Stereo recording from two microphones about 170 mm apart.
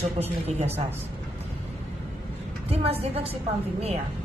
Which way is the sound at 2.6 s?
35° right (ahead or behind).